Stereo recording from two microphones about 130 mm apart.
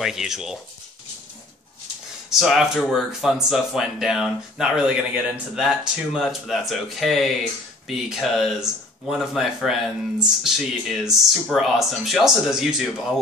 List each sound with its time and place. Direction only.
0.0 s speech: 5° right (ahead or behind)
2.2 s speech: centre (ahead or behind)